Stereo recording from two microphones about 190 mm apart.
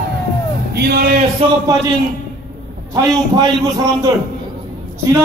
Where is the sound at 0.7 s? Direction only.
55° right (ahead or behind).